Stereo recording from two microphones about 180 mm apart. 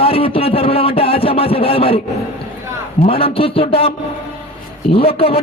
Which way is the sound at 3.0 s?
30° left (ahead or behind).